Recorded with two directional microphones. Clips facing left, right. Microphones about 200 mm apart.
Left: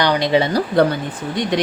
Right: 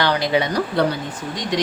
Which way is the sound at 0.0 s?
20° left (ahead or behind).